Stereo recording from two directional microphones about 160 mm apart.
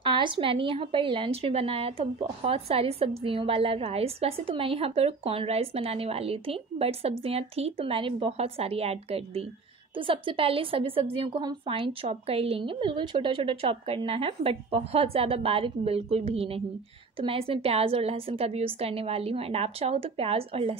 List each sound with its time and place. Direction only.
0.0 s a woman's voice: 30° right (ahead or behind)